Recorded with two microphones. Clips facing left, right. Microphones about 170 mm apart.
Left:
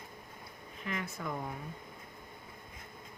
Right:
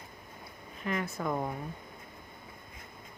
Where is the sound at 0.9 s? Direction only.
45° right (ahead or behind).